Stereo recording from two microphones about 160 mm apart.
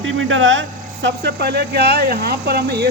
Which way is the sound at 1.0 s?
90° right.